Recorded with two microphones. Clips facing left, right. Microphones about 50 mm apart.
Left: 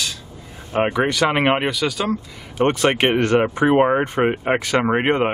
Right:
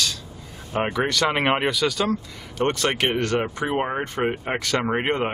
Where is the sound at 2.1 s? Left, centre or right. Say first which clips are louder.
Left 2 dB; centre.